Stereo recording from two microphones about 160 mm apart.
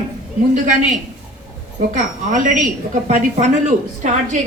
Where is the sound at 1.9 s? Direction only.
50° right (ahead or behind).